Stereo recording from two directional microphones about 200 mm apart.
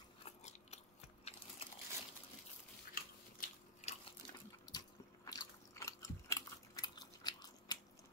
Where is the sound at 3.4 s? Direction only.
35° left (ahead or behind).